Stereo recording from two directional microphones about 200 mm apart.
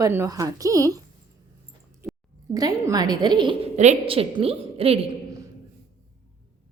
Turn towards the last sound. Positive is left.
turn(degrees=-30)  # may be behind; listen again after turning